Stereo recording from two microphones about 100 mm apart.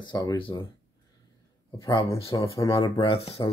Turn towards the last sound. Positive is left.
turn(degrees=75)  # may be behind; listen again after turning